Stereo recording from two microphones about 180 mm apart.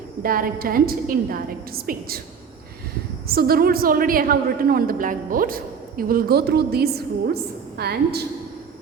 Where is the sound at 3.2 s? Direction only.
55° right (ahead or behind).